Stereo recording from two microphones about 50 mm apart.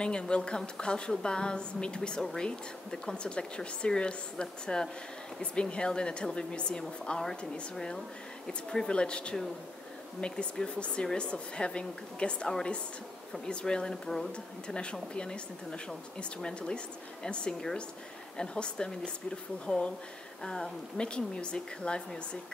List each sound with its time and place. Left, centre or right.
0.0 s speech: centre